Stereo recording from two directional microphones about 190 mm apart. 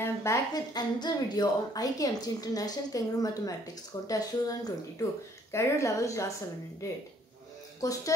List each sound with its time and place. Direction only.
0.0 s a woman's voice: 15° left (ahead or behind)
7.8 s speech: 20° left (ahead or behind)